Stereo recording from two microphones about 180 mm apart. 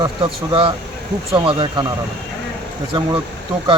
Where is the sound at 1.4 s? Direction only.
30° right (ahead or behind).